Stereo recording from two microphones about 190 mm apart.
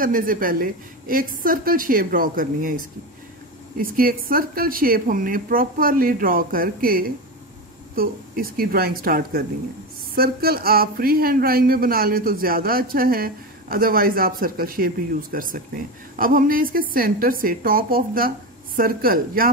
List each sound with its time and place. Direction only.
0.0 s speech: 50° right (ahead or behind)